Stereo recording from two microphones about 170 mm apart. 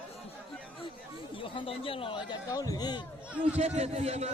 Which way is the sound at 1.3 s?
30° left (ahead or behind).